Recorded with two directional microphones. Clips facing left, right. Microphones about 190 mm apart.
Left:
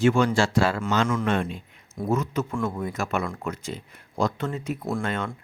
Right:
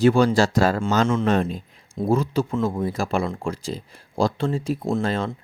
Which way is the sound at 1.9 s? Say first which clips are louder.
Right 4 dB; 30° right (ahead or behind).